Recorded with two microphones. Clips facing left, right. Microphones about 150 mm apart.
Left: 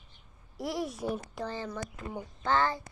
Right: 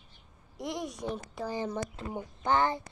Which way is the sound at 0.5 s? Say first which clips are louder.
Left 2 dB; 5° left (ahead or behind).